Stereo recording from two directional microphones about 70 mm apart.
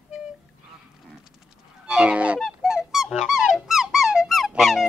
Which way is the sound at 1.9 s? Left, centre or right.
Centre.